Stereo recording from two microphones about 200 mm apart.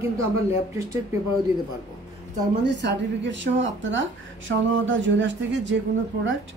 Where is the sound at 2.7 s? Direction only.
60° right (ahead or behind).